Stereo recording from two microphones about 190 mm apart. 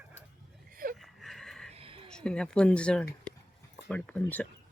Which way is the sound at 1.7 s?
30° right (ahead or behind).